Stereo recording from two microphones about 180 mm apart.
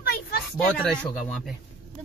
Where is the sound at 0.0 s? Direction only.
60° left (ahead or behind).